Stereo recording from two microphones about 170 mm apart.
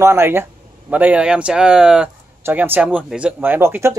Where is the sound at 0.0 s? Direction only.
15° right (ahead or behind).